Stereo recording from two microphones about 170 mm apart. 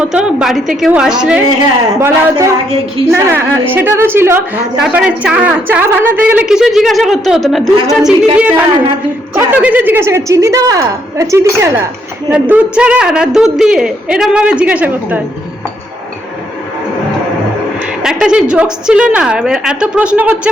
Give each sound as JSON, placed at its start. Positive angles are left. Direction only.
{"t": 0.0, "sound": "a woman's voice", "side_deg": -5}
{"t": 18.0, "sound": "a woman's voice", "side_deg": -5}